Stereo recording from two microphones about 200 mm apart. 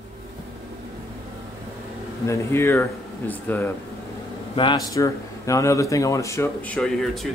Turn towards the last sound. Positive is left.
turn(degrees=0)  # may be behind; listen again after turning